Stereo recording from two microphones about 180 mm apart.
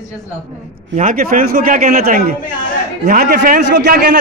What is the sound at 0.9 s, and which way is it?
A man's voice, 50° right (ahead or behind).